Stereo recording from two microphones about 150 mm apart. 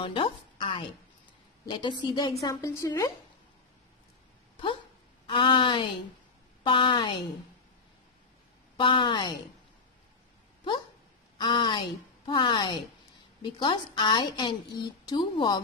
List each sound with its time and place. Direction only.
0.0 s a woman's voice: 35° left (ahead or behind)
5.2 s a woman's voice: 35° left (ahead or behind)
8.7 s a woman's voice: 30° left (ahead or behind)
11.3 s a woman's voice: 30° left (ahead or behind)